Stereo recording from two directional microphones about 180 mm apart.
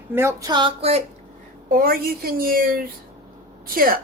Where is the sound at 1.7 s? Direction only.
55° right (ahead or behind).